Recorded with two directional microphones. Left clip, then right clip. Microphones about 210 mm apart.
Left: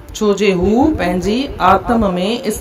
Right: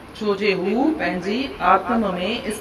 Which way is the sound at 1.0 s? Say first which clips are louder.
Left 6 dB; 30° left (ahead or behind).